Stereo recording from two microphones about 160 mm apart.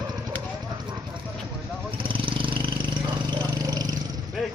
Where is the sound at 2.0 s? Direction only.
30° right (ahead or behind).